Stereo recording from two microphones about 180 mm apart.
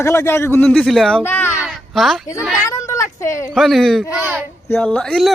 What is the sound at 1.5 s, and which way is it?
Speech, centre (ahead or behind).